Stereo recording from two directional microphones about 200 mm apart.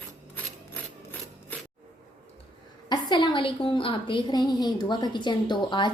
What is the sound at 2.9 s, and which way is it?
A woman's voice, 20° left (ahead or behind).